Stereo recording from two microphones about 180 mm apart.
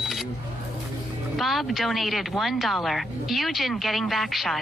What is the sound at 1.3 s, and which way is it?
Speech, centre (ahead or behind).